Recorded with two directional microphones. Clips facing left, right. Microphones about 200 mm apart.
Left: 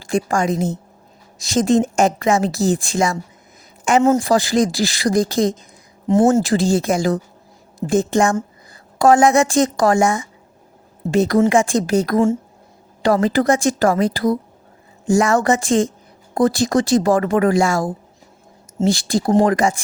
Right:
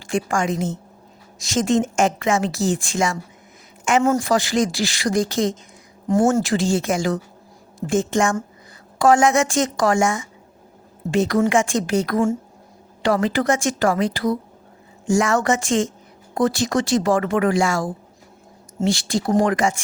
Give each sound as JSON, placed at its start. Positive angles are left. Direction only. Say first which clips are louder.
{"t": 0.0, "sound": "a woman's voice", "louder": "left 3 dB", "side_deg": 35}
{"t": 6.1, "sound": "speech", "louder": "left 3 dB", "side_deg": 25}
{"t": 6.4, "sound": "a woman's voice", "louder": "left 3 dB", "side_deg": 35}
{"t": 13.2, "sound": "a woman's voice", "louder": "left 4 dB", "side_deg": 35}
{"t": 18.9, "sound": "a woman's voice", "louder": "left 3 dB", "side_deg": 35}